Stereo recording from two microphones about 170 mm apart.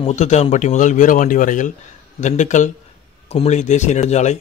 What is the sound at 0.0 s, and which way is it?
Speech, 40° left (ahead or behind).